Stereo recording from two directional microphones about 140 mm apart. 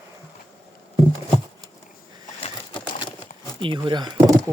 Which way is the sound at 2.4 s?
35° left (ahead or behind).